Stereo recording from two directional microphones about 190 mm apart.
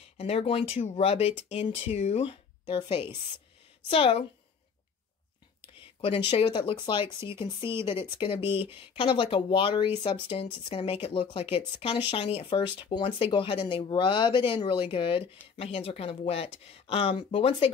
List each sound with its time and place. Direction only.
0.2 s speech: 30° left (ahead or behind)
5.9 s speech: 30° left (ahead or behind)